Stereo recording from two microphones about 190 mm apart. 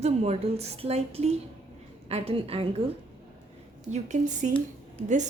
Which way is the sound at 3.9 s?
40° right (ahead or behind).